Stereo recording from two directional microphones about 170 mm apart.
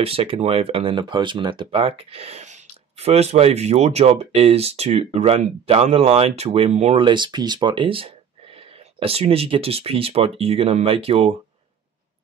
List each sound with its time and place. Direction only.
0.0 s speech: 35° right (ahead or behind)